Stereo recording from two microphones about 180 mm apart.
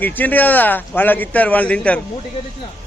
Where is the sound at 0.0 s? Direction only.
10° left (ahead or behind).